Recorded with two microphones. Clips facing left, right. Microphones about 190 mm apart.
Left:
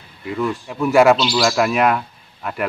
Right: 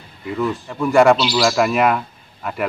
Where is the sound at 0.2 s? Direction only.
Centre (ahead or behind).